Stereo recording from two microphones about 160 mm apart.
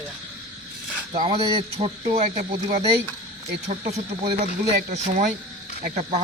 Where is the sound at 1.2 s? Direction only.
35° right (ahead or behind).